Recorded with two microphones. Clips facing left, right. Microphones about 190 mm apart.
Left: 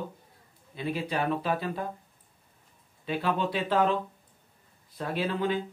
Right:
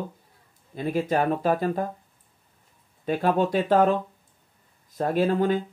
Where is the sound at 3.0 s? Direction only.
45° right (ahead or behind).